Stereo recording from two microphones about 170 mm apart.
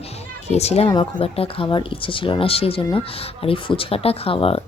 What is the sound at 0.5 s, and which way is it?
Speech, 40° left (ahead or behind).